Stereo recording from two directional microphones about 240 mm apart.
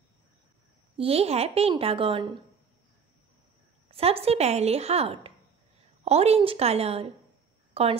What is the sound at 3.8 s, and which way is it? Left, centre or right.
Speech, right.